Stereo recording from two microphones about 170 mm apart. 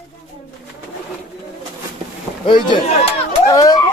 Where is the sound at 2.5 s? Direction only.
25° left (ahead or behind).